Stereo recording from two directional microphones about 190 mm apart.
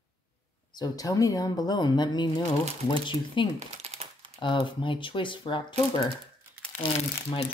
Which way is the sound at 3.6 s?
35° right (ahead or behind).